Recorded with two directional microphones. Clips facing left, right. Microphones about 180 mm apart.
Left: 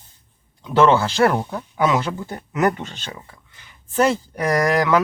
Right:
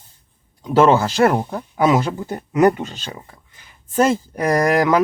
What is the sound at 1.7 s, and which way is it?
Speech, 30° right (ahead or behind).